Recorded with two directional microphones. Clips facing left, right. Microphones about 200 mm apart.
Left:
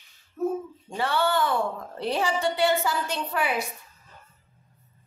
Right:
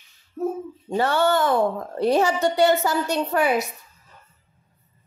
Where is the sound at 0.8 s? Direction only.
45° right (ahead or behind).